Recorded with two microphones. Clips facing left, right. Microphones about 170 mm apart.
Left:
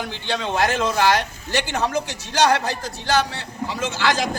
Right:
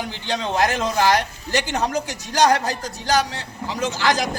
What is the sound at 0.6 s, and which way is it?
Speech, 15° right (ahead or behind).